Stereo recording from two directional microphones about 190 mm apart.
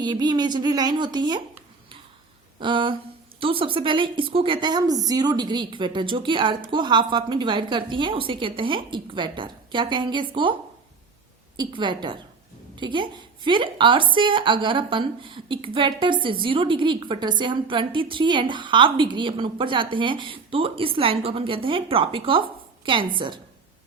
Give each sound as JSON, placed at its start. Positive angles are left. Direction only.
{"t": 0.0, "sound": "a woman's voice", "side_deg": -20}
{"t": 2.6, "sound": "a woman's voice", "side_deg": -25}
{"t": 11.5, "sound": "a woman's voice", "side_deg": -25}